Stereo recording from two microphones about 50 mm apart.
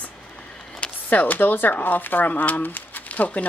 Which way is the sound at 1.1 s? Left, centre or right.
Left.